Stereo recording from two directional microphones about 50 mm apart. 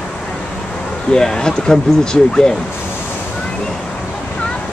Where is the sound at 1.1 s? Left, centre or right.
Centre.